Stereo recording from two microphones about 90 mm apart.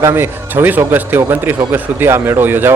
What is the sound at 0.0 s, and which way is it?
A man's voice, 30° right (ahead or behind).